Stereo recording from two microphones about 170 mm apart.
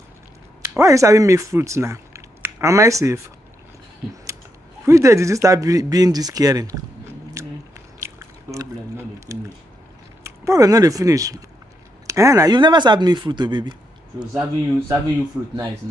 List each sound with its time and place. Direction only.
0.6 s speech: 15° right (ahead or behind)
4.8 s speech: 15° right (ahead or behind)
14.3 s speech: 15° right (ahead or behind)